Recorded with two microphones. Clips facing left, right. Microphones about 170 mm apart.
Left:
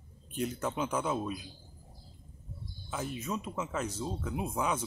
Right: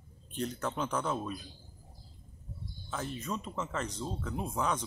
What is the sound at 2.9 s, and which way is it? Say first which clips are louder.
Speech: left 1 dB; 5° left (ahead or behind).